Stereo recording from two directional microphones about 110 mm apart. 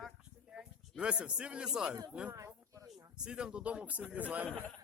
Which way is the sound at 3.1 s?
10° right (ahead or behind).